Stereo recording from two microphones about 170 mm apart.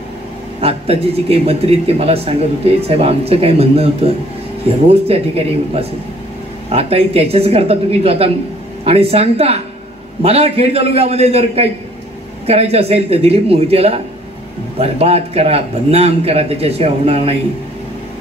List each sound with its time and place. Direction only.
0.6 s a man's voice: 35° right (ahead or behind)